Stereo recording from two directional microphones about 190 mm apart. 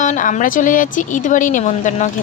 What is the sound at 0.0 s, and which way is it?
A woman's voice, 40° left (ahead or behind).